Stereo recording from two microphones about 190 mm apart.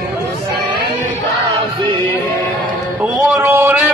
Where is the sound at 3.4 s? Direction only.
10° right (ahead or behind).